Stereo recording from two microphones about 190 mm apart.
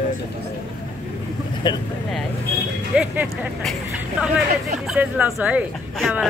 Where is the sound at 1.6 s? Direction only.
25° left (ahead or behind).